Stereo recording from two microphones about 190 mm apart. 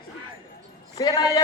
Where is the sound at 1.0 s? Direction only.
20° left (ahead or behind).